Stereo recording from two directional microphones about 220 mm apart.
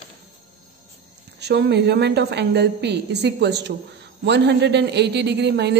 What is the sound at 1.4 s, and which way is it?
A woman's voice, 50° right (ahead or behind).